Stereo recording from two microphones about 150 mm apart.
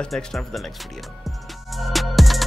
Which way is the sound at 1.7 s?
Centre (ahead or behind).